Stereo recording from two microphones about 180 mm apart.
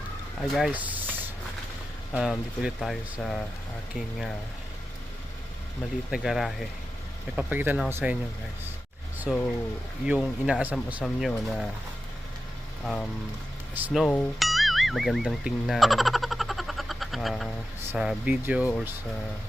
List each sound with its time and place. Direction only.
0.4 s speech: centre (ahead or behind)
6.1 s speech: centre (ahead or behind)
9.3 s speech: 5° right (ahead or behind)
12.8 s speech: 5° left (ahead or behind)
13.7 s speech: 10° right (ahead or behind)
14.0 s music: 5° left (ahead or behind)
17.9 s speech: 5° right (ahead or behind)